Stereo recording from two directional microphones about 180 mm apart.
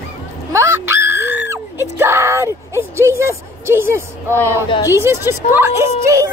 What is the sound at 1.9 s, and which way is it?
A woman's voice, 15° right (ahead or behind).